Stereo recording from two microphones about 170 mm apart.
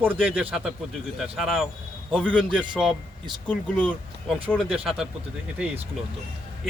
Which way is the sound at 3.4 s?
10° left (ahead or behind).